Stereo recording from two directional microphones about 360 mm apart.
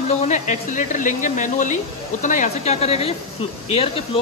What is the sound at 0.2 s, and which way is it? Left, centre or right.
Speech, centre.